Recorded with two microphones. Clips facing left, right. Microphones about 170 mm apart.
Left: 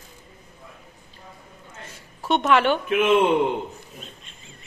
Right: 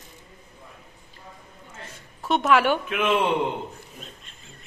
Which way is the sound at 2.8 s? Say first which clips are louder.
Left 4 dB; 25° left (ahead or behind).